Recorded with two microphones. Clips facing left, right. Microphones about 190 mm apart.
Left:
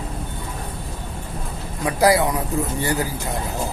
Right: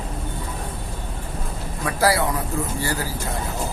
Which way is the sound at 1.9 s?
15° left (ahead or behind).